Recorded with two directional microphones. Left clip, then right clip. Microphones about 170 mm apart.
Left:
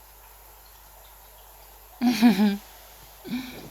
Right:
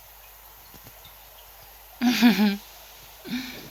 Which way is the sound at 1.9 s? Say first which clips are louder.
Right 1 dB; 5° left (ahead or behind).